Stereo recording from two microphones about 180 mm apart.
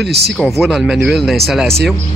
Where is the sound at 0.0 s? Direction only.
65° right (ahead or behind).